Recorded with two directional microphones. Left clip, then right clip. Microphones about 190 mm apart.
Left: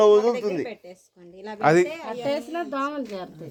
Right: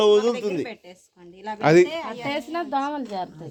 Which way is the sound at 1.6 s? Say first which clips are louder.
Right 2 dB; 30° right (ahead or behind).